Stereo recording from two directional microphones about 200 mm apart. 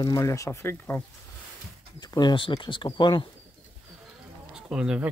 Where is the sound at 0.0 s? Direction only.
15° left (ahead or behind).